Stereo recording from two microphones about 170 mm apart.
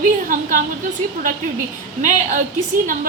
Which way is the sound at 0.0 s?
50° right (ahead or behind).